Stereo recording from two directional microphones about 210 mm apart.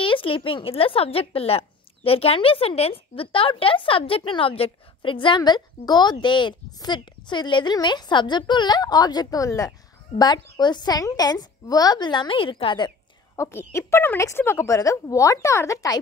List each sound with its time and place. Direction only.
0.0 s speech: 25° left (ahead or behind)
13.4 s speech: 10° left (ahead or behind)